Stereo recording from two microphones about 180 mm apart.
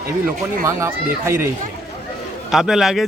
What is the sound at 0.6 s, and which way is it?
Speech, 15° right (ahead or behind).